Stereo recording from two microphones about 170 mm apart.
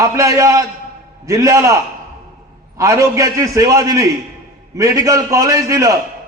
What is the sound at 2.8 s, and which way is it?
A man's voice, 20° right (ahead or behind).